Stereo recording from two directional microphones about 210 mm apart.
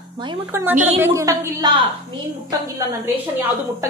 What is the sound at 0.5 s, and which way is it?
A woman's voice, 10° right (ahead or behind).